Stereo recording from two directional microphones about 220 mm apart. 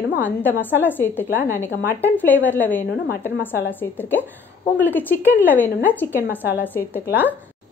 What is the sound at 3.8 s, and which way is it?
A woman's voice, 10° left (ahead or behind).